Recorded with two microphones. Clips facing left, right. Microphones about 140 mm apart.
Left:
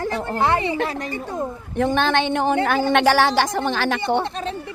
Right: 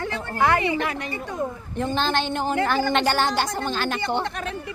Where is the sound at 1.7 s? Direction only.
70° left (ahead or behind); by 4.0 s 90° left.